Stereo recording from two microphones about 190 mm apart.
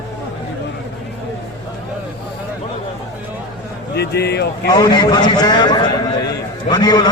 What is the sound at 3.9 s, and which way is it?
Speech, 60° left (ahead or behind).